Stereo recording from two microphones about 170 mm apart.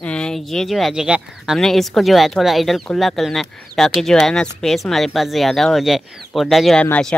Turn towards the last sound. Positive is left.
turn(degrees=5)  # may be behind; listen again after turning